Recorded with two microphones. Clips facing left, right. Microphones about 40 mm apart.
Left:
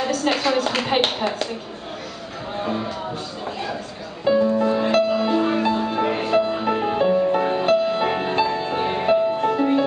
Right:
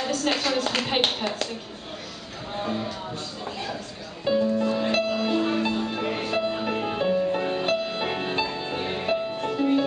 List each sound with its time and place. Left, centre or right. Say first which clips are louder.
0.0 s a woman's voice: left 4 dB; centre
2.5 s speech: left 3 dB; centre
4.2 s music: left 5 dB; centre
4.9 s music: left 5 dB; centre